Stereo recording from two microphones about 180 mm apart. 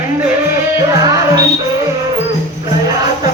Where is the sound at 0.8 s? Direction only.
20° right (ahead or behind).